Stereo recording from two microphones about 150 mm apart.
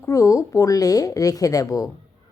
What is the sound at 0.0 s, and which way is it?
A woman's voice, 20° left (ahead or behind).